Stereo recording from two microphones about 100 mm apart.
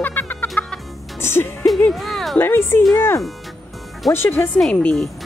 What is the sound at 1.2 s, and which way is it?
Music, 25° left (ahead or behind).